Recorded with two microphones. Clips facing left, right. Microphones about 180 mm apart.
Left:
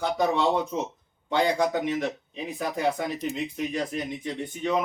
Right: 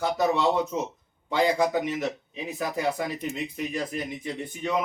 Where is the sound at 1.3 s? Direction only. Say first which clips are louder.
Right 1 dB; 5° right (ahead or behind).